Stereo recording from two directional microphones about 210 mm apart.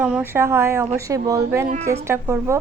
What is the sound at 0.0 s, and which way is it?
Speech, 10° right (ahead or behind).